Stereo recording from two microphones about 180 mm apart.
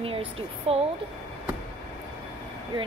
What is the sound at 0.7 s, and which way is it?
Speech, 35° right (ahead or behind).